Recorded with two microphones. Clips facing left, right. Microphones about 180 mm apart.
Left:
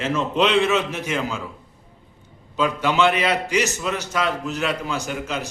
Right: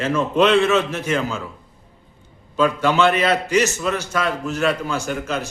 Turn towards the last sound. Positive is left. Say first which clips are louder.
# right 3 dB
turn(degrees=15)  # may be behind; listen again after turning